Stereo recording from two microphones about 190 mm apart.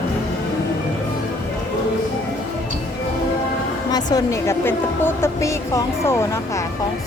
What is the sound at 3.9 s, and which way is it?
A woman's voice, 20° left (ahead or behind).